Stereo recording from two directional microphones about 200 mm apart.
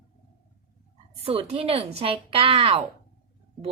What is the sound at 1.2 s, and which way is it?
Speech, 30° right (ahead or behind).